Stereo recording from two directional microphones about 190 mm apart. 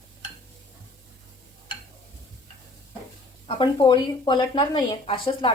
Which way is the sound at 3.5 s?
25° left (ahead or behind).